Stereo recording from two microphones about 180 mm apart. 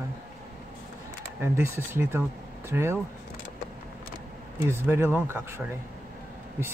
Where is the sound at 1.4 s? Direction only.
15° right (ahead or behind).